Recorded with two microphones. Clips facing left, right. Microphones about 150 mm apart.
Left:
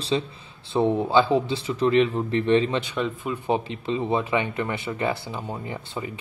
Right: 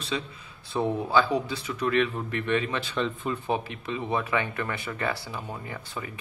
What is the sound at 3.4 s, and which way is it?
Speech, 20° left (ahead or behind).